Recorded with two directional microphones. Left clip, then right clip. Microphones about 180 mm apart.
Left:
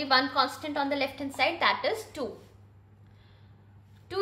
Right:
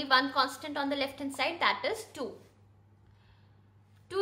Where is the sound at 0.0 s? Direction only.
25° right (ahead or behind).